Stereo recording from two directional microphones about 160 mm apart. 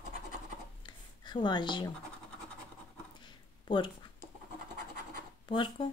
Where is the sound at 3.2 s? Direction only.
30° left (ahead or behind).